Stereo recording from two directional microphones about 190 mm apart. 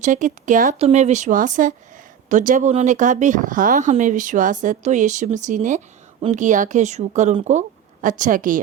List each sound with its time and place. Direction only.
0.0 s a woman's voice: 40° right (ahead or behind)